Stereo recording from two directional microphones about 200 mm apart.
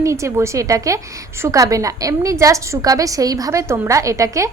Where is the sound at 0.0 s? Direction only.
15° right (ahead or behind).